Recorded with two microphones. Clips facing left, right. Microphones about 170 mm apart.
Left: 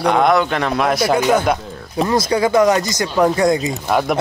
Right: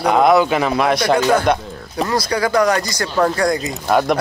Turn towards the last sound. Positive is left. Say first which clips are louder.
# right 2 dB
turn(degrees=5)  # may be behind; listen again after turning